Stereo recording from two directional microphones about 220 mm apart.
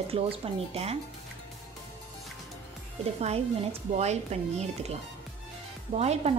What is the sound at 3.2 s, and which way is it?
A woman's voice, 30° right (ahead or behind).